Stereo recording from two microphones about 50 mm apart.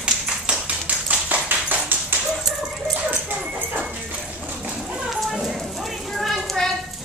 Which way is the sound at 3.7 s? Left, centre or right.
Right.